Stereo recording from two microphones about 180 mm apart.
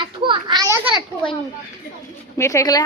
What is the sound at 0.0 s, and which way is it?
Children playing, 25° right (ahead or behind).